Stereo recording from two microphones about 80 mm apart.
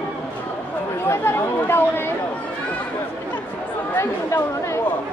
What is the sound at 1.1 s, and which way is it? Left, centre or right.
Chatter, left.